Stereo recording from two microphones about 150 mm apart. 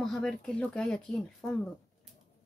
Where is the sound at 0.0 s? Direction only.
5° left (ahead or behind).